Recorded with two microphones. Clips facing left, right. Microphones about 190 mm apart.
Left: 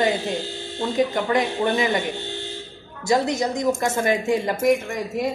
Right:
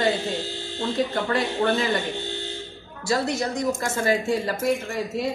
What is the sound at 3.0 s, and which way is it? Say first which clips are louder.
A woman's voice: left 3 dB; 20° left (ahead or behind).